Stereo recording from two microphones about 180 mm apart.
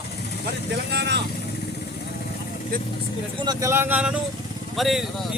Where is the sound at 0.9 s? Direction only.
70° right (ahead or behind).